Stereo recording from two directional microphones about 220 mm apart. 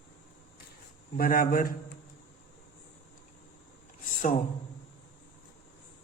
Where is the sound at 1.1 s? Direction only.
40° left (ahead or behind).